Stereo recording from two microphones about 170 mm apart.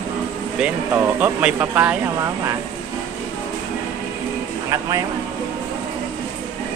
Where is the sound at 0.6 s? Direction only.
10° right (ahead or behind).